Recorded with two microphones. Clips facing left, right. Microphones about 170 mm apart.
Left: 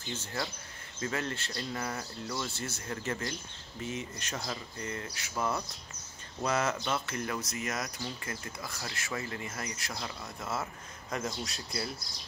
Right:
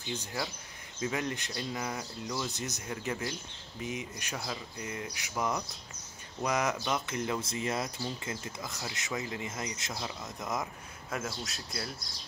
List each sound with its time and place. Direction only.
0.1 s speech: 15° right (ahead or behind)
11.1 s speech: 5° right (ahead or behind)